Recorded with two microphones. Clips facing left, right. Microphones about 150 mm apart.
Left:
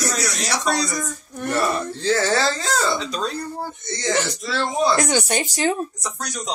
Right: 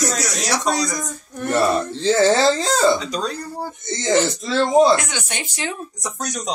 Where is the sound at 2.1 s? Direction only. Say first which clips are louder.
Right 5 dB; 25° right (ahead or behind).